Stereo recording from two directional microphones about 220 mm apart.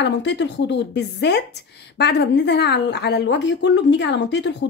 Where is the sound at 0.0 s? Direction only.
50° left (ahead or behind).